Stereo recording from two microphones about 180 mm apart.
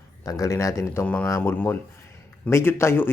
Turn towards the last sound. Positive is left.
turn(degrees=15)  # may be behind; listen again after turning